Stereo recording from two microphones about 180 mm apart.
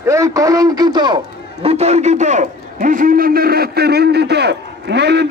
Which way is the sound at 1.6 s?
35° right (ahead or behind).